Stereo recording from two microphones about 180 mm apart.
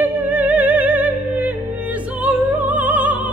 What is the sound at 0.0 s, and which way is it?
Music, 10° right (ahead or behind).